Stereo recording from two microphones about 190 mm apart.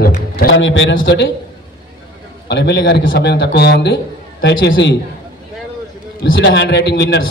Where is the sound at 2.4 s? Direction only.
60° left (ahead or behind).